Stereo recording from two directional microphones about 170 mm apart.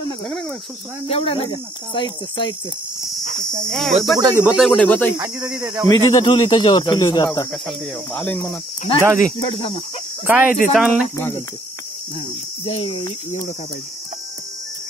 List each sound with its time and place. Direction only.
1.0 s speech: 35° left (ahead or behind)
3.6 s cricket: centre (ahead or behind)
4.2 s speech: 15° right (ahead or behind)
4.6 s speech: 5° left (ahead or behind)
5.1 s speech: 20° right (ahead or behind)
5.9 s speech: 25° left (ahead or behind)
7.5 s cricket: centre (ahead or behind)
9.0 s speech: 10° right (ahead or behind)
9.4 s speech: 30° left (ahead or behind)
10.2 s speech: 10° right (ahead or behind)
10.7 s cricket: 5° right (ahead or behind)
11.1 s speech: 15° left (ahead or behind)
12.6 s speech: 35° left (ahead or behind)